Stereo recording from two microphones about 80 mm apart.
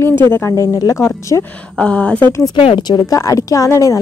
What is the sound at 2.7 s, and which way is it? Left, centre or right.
Speech, left.